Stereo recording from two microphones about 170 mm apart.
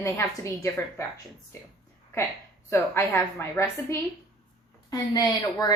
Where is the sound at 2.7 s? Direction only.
15° left (ahead or behind).